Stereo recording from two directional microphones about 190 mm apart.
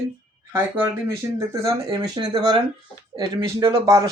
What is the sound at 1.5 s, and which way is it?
Speech, 20° right (ahead or behind).